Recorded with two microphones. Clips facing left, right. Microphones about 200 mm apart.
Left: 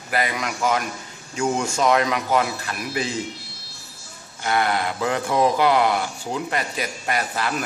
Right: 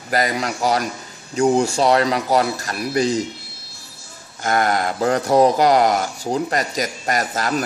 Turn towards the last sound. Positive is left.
turn(degrees=-40)  # may be behind; listen again after turning